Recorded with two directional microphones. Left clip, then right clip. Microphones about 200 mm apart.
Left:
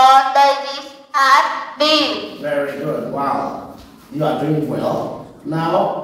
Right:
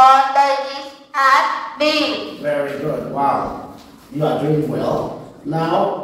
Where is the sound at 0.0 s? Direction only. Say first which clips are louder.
Left 1 dB; 30° left (ahead or behind).